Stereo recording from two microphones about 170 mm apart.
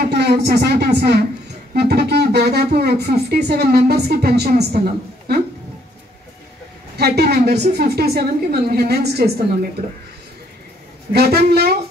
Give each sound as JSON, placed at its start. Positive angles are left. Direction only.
{"t": 0.0, "sound": "a woman's voice", "side_deg": -70}
{"t": 7.0, "sound": "speech", "side_deg": -70}
{"t": 11.1, "sound": "speech", "side_deg": -70}